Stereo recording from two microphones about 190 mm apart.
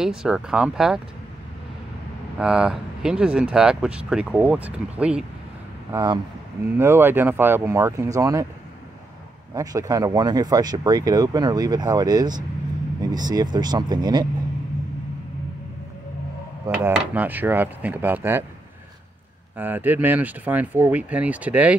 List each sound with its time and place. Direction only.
0.0 s speech: 5° right (ahead or behind)
2.3 s speech: 5° right (ahead or behind)
5.9 s speech: 20° right (ahead or behind)
9.5 s speech: 20° right (ahead or behind)
16.6 s speech: 10° right (ahead or behind)
19.5 s speech: 10° right (ahead or behind)